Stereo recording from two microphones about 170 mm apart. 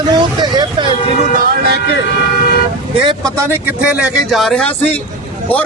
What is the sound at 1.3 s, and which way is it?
Speech, 65° right (ahead or behind).